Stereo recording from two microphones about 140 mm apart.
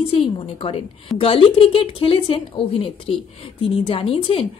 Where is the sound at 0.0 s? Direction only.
40° left (ahead or behind).